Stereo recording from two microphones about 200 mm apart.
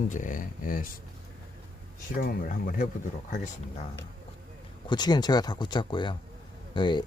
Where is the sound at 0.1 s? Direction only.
40° left (ahead or behind).